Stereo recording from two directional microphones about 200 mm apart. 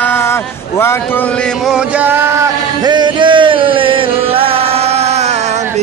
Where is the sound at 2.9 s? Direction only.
20° right (ahead or behind).